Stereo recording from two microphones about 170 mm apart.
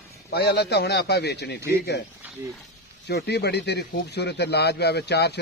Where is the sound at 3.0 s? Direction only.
75° left (ahead or behind).